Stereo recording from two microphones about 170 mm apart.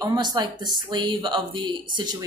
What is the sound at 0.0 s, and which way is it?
A woman's voice, 25° right (ahead or behind).